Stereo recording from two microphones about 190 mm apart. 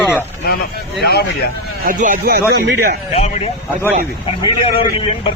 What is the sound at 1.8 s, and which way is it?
Speech, 45° right (ahead or behind).